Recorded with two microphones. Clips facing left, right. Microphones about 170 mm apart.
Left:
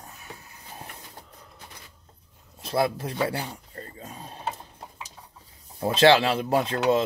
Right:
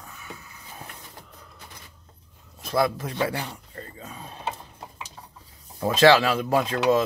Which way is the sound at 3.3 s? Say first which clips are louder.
Even; 35° left (ahead or behind).